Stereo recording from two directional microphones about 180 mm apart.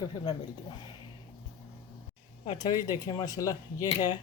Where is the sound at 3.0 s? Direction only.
20° left (ahead or behind).